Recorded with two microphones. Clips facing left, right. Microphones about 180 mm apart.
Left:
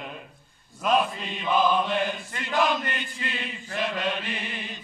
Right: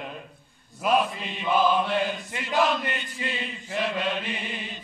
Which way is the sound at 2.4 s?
Centre (ahead or behind).